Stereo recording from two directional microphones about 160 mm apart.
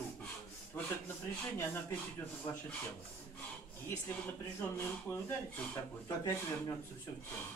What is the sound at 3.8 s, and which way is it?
Speech, 10° left (ahead or behind).